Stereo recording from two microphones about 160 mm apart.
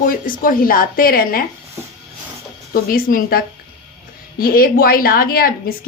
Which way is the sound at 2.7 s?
65° left (ahead or behind).